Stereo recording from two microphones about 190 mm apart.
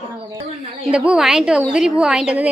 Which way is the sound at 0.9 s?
5° right (ahead or behind).